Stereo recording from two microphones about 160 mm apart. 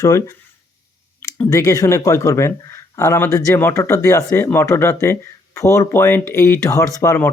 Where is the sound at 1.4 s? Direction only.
20° left (ahead or behind).